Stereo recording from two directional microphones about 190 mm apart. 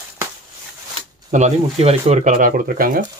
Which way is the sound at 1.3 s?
35° right (ahead or behind).